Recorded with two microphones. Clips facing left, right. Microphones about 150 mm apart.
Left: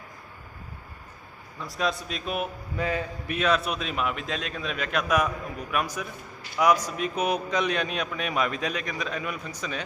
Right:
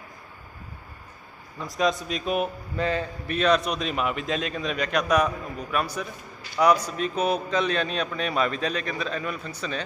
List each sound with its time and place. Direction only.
1.8 s a man's voice: centre (ahead or behind)